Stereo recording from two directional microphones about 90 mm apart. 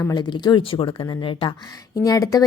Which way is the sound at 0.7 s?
70° left (ahead or behind).